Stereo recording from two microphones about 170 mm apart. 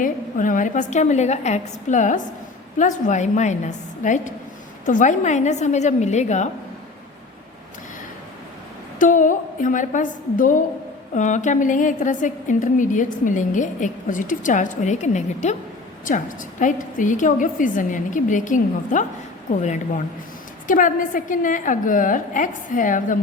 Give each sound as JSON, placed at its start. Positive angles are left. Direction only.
{"t": 0.0, "sound": "a woman's voice", "side_deg": 50}
{"t": 9.0, "sound": "a woman's voice", "side_deg": 50}